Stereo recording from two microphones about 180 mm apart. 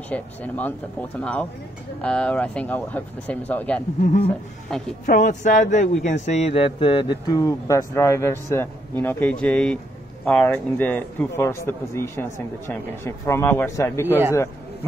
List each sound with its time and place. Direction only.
0.1 s a man's voice: 10° left (ahead or behind)
4.0 s a man's voice: 45° left (ahead or behind); by 14.1 s 15° left (ahead or behind)